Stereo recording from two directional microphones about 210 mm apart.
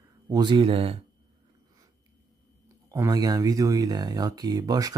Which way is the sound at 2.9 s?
15° right (ahead or behind).